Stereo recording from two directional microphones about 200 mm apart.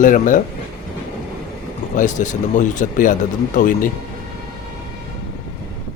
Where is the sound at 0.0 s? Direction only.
40° left (ahead or behind).